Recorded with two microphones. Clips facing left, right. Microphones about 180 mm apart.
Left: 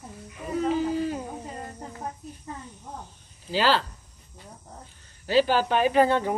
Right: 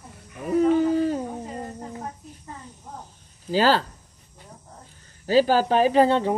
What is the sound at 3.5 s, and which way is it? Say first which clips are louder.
Speech: right 3 dB; 45° right (ahead or behind).